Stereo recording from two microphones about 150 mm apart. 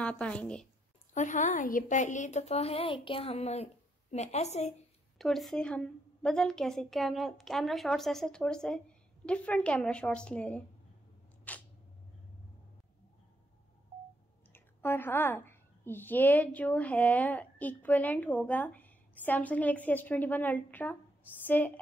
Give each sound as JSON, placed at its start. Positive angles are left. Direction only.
{"t": 0.0, "sound": "a woman's voice", "side_deg": 10}
{"t": 1.1, "sound": "a woman's voice", "side_deg": 55}
{"t": 5.2, "sound": "a woman's voice", "side_deg": 0}
{"t": 11.5, "sound": "single-lens reflex camera", "side_deg": 10}
{"t": 14.5, "sound": "a woman's voice", "side_deg": 15}